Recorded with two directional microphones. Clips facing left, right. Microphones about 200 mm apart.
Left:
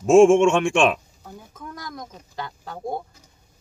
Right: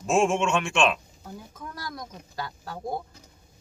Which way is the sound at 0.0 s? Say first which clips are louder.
Left 10 dB; 50° left (ahead or behind).